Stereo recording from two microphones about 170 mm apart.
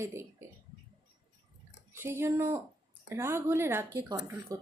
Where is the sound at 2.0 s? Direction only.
15° right (ahead or behind).